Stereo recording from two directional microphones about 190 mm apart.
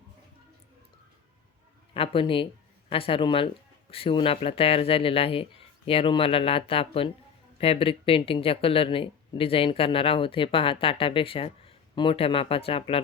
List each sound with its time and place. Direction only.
1.9 s speech: 30° left (ahead or behind)